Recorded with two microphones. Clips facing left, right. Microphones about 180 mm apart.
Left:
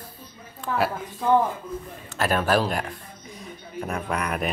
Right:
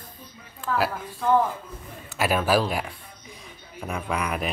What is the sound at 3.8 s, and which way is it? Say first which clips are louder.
Speech: even; centre (ahead or behind).